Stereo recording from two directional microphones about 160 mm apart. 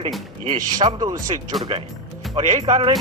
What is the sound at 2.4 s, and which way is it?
Speech, 40° right (ahead or behind).